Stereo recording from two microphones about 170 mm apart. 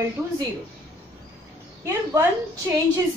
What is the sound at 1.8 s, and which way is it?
Speech, 15° right (ahead or behind).